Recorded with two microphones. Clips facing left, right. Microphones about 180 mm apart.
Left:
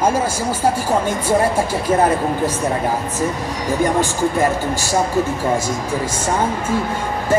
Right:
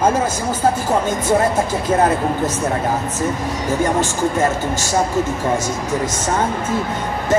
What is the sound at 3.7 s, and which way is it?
Speech, 15° left (ahead or behind).